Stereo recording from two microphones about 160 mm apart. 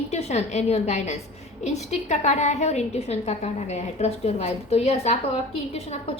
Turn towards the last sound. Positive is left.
turn(degrees=40)  # may be behind; listen again after turning